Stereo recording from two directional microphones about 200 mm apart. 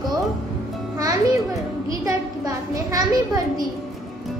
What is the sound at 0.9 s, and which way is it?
Music, 15° right (ahead or behind).